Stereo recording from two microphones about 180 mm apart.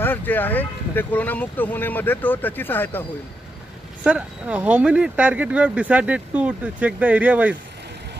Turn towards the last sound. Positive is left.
turn(degrees=-10)  # may be behind; listen again after turning